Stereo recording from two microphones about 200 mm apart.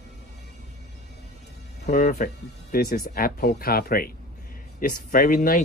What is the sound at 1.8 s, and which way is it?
Speech, 50° left (ahead or behind).